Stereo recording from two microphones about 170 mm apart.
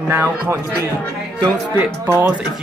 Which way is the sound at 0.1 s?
15° right (ahead or behind).